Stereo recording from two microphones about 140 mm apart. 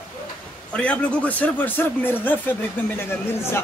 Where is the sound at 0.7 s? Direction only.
10° left (ahead or behind).